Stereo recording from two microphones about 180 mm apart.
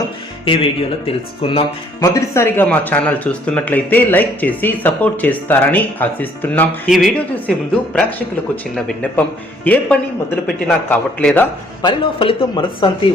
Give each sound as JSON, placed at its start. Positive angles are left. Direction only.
{"t": 0.4, "sound": "speech", "side_deg": 30}
{"t": 2.0, "sound": "speech", "side_deg": 15}
{"t": 8.7, "sound": "speech", "side_deg": 5}
{"t": 11.8, "sound": "speech", "side_deg": 25}